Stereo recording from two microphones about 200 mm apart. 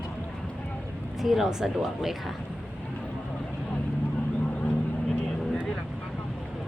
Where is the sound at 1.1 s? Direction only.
Centre (ahead or behind).